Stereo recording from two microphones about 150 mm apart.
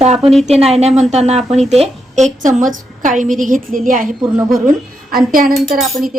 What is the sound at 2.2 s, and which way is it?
A woman's voice, 55° right (ahead or behind).